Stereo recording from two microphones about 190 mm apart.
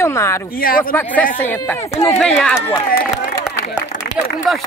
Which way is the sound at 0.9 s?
10° left (ahead or behind).